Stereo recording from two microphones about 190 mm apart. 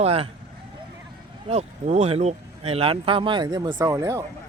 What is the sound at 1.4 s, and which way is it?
Speech, 35° right (ahead or behind).